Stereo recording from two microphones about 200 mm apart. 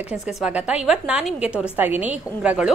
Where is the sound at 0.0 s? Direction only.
5° right (ahead or behind).